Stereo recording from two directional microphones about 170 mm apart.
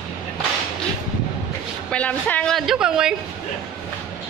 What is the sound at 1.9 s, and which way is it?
Speech, 10° left (ahead or behind).